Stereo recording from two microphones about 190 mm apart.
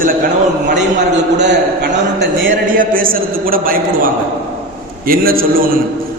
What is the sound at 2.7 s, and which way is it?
A man's voice, 45° right (ahead or behind).